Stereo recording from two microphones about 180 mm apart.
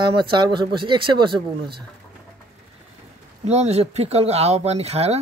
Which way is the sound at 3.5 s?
35° right (ahead or behind).